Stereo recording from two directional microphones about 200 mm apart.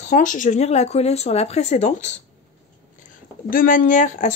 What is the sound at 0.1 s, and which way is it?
Speech, 40° left (ahead or behind).